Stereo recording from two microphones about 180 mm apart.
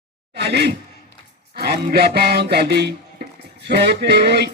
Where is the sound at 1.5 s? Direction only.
60° right (ahead or behind).